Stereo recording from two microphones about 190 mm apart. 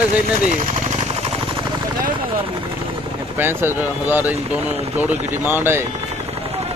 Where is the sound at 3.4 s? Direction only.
10° right (ahead or behind).